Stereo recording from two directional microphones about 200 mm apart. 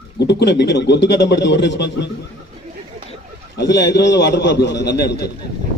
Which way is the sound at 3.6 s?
55° left (ahead or behind).